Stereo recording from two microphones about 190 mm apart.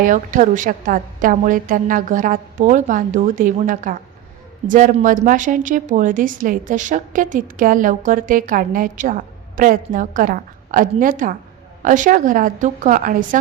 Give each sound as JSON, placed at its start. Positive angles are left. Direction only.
{"t": 0.0, "sound": "a woman's voice", "side_deg": -45}